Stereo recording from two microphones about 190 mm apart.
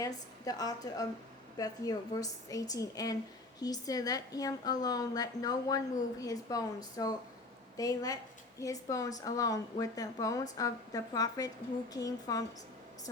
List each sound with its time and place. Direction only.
0.0 s speech: 20° left (ahead or behind)